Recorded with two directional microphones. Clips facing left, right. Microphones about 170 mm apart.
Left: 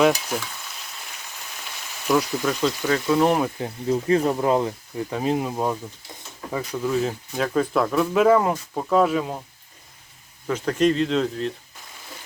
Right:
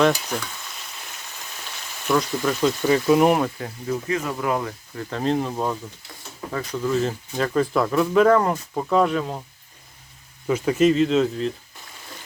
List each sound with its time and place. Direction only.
0.0 s frying: 5° left (ahead or behind)
2.0 s speech: 5° left (ahead or behind); by 3.3 s 15° right (ahead or behind)
3.6 s speech: 30° left (ahead or behind)
5.0 s speech: 10° left (ahead or behind)
10.4 s speech: 10° right (ahead or behind)